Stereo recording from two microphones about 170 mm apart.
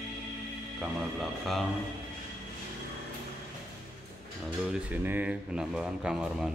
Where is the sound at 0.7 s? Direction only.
Centre (ahead or behind).